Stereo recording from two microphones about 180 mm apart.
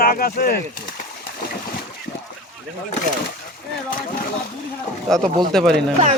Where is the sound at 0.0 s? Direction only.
55° left (ahead or behind).